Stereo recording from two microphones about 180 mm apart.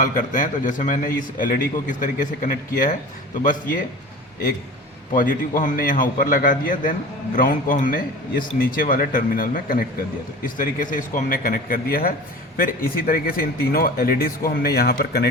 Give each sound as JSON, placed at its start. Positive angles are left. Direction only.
{"t": 0.0, "sound": "a man's voice", "side_deg": 45}
{"t": 5.1, "sound": "a man's voice", "side_deg": 50}